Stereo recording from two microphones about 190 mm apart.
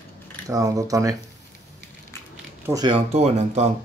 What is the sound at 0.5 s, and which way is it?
Speech, 15° right (ahead or behind).